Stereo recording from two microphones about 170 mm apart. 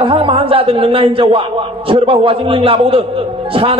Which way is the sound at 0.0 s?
30° right (ahead or behind).